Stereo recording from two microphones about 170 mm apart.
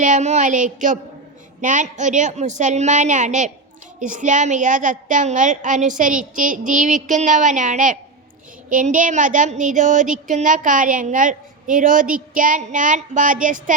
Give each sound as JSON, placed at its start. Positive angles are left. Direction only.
{"t": 0.0, "sound": "a woman's voice", "side_deg": -45}